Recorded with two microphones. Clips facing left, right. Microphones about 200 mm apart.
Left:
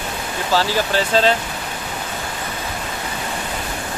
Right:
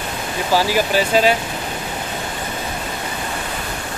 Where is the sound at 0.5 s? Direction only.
15° right (ahead or behind).